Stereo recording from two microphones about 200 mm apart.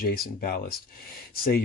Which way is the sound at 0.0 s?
50° left (ahead or behind).